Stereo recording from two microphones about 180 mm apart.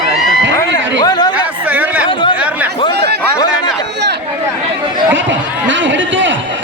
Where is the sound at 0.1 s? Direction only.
Centre (ahead or behind).